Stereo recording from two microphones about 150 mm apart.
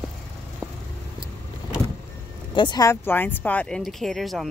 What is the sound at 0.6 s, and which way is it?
Vehicle, 5° left (ahead or behind).